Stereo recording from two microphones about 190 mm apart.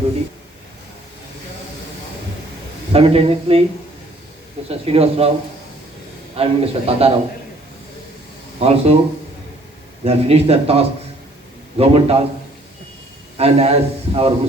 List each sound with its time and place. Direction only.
2.9 s a man's voice: 30° right (ahead or behind)
4.7 s a man's voice: 30° right (ahead or behind)
6.3 s a man's voice: 30° right (ahead or behind)
8.5 s speech: 30° right (ahead or behind)
10.0 s a man's voice: 30° right (ahead or behind)
13.3 s a man's voice: 30° right (ahead or behind)